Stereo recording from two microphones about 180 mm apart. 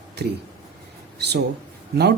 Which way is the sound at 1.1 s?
65° right (ahead or behind).